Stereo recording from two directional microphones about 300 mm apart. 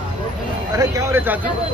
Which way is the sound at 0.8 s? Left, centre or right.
Centre.